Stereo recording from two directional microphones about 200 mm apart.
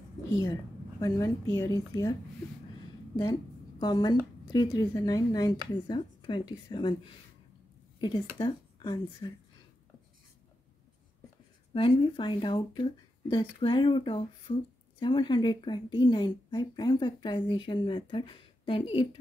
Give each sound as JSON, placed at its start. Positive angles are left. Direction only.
{"t": 0.4, "sound": "a woman's voice", "side_deg": 20}
{"t": 3.8, "sound": "a woman's voice", "side_deg": 20}
{"t": 8.0, "sound": "a woman's voice", "side_deg": 20}
{"t": 11.7, "sound": "a woman's voice", "side_deg": 25}
{"t": 15.0, "sound": "a woman's voice", "side_deg": 25}